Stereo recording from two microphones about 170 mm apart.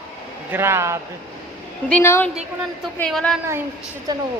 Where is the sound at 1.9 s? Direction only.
10° left (ahead or behind).